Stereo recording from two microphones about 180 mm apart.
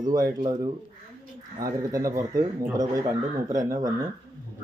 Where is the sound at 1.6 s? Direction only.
20° right (ahead or behind).